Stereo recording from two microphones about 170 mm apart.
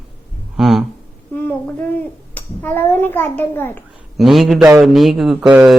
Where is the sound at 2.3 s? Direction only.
10° left (ahead or behind).